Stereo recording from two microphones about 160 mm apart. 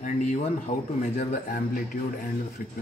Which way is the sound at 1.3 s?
60° left (ahead or behind).